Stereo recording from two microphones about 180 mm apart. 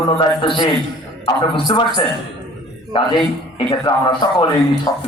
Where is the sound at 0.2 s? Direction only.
25° left (ahead or behind).